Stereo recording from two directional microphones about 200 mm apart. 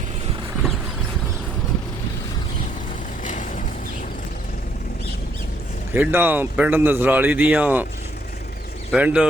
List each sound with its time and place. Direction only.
3.2 s vehicle: 40° left (ahead or behind)
5.9 s speech: 10° right (ahead or behind)
8.9 s speech: 5° right (ahead or behind)